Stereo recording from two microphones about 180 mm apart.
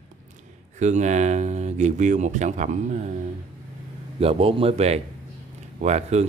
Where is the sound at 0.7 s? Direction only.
40° right (ahead or behind).